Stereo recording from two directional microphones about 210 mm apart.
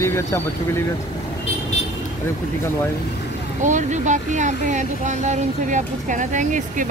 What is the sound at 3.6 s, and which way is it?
Speech, 35° right (ahead or behind).